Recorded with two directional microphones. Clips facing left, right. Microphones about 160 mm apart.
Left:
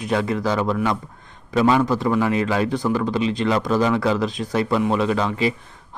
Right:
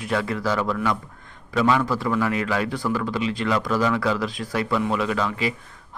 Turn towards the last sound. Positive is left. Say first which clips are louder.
# left 4 dB
turn(degrees=25)  # may be behind; listen again after turning